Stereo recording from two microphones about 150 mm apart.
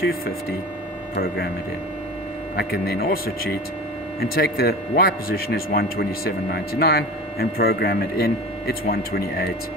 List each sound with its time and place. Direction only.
1.2 s a man's voice: 90° left
2.5 s a man's voice: 90° left